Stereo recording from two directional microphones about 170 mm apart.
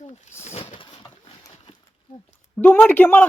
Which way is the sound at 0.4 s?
40° left (ahead or behind).